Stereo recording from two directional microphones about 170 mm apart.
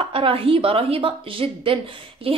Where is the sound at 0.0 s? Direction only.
30° right (ahead or behind).